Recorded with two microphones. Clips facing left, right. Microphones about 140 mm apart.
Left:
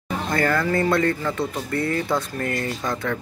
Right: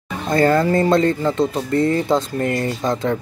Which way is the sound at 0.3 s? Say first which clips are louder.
Right 7 dB; 25° right (ahead or behind).